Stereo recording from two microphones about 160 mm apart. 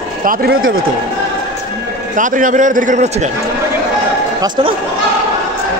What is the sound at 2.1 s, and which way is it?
A man's voice, 55° right (ahead or behind).